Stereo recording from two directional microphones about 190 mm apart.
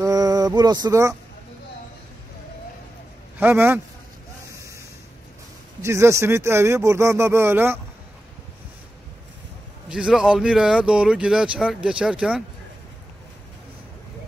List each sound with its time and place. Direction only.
0.0 s a sound: 20° right (ahead or behind)
3.3 s speech: 10° right (ahead or behind)
4.5 s vehicle: 15° right (ahead or behind)
5.8 s speech: 15° right (ahead or behind)
9.8 s speech: 5° right (ahead or behind)